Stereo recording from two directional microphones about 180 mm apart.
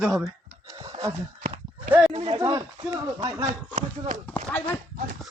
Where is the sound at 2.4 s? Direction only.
20° right (ahead or behind).